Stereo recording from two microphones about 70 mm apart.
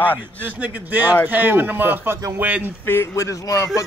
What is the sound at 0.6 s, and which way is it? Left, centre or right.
Speech, right.